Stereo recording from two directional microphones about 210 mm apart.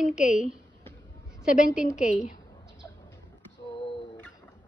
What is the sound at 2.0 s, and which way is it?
Speech, 35° left (ahead or behind).